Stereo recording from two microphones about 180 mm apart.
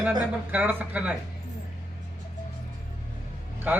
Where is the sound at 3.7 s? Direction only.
10° right (ahead or behind).